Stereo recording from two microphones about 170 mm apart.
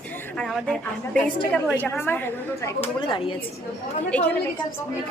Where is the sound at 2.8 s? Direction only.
30° left (ahead or behind).